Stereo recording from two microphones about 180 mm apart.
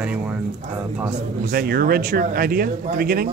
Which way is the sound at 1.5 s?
55° right (ahead or behind).